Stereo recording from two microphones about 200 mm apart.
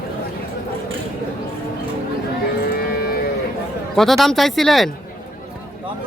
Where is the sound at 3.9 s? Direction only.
Centre (ahead or behind).